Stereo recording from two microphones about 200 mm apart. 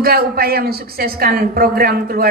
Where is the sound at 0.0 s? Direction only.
50° right (ahead or behind).